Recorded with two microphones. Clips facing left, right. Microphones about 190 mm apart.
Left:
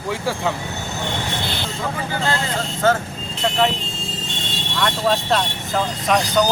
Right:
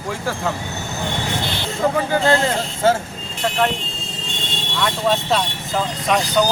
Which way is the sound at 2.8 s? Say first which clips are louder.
Right 1 dB; 30° right (ahead or behind).